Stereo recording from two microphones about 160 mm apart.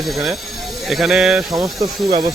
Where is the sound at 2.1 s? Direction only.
25° right (ahead or behind).